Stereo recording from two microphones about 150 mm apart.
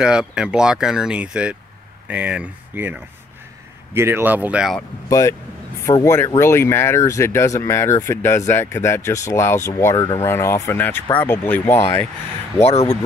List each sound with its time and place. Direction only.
0.0 s speech: 5° right (ahead or behind)
5.9 s speech: 20° left (ahead or behind)
12.6 s speech: 45° left (ahead or behind)